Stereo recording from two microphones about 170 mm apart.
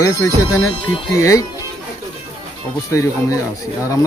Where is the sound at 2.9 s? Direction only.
20° left (ahead or behind).